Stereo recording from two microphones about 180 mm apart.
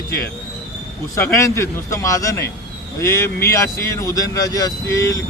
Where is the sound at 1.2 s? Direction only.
15° left (ahead or behind).